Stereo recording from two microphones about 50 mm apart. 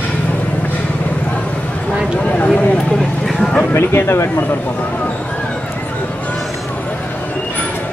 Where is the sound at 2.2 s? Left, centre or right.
Left.